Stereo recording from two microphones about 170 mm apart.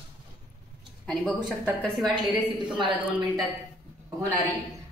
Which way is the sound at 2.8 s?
25° right (ahead or behind).